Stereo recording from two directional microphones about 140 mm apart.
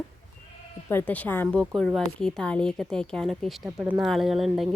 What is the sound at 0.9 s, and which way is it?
A woman's voice, 15° left (ahead or behind).